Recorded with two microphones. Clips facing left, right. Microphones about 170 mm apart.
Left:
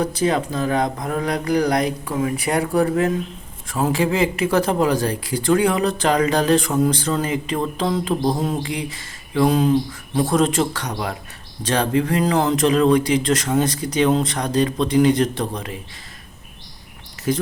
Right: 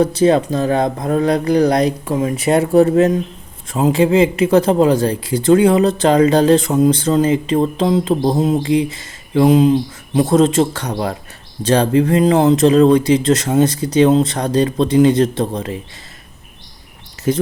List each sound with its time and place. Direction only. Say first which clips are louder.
0.0 s speech: right 7 dB; 25° right (ahead or behind)